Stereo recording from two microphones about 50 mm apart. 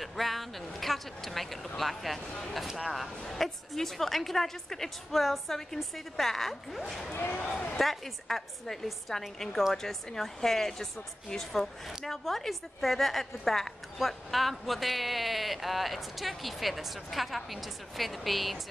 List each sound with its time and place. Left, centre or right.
0.0 s a woman's voice: centre
7.1 s speech: left
7.8 s a woman's voice: centre